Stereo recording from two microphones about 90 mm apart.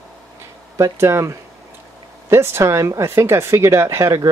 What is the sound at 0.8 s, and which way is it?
Speech, 30° right (ahead or behind).